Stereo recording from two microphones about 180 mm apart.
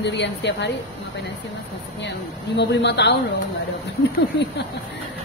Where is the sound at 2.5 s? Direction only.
70° left (ahead or behind).